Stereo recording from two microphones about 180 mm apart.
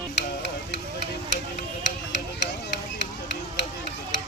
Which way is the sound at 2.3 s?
70° left (ahead or behind).